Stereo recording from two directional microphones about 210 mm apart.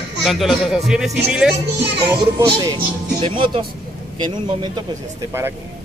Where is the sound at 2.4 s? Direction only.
20° right (ahead or behind).